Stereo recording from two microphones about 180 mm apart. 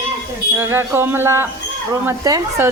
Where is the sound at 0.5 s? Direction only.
15° right (ahead or behind).